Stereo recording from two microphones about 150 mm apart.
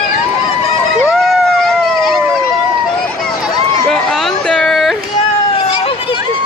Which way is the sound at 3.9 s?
5° left (ahead or behind).